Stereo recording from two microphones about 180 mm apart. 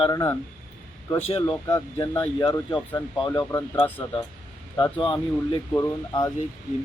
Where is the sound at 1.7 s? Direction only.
15° left (ahead or behind).